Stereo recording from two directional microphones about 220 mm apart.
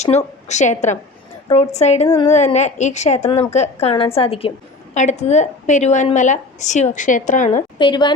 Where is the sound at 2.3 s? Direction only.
30° left (ahead or behind).